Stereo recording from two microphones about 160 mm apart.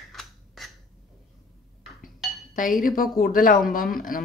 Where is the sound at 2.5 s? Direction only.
55° left (ahead or behind).